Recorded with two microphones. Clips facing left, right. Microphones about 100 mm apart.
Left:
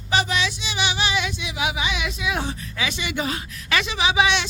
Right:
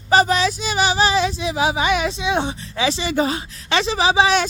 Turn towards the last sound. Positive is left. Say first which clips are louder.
# right 4 dB
turn(degrees=-35)  # may be behind; listen again after turning